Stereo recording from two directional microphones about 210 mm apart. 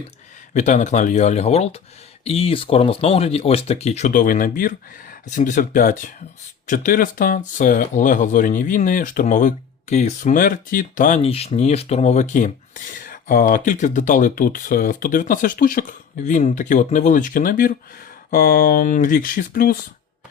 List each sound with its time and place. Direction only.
0.5 s speech: 35° left (ahead or behind)